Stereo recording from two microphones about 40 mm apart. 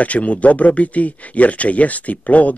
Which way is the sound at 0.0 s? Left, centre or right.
Left.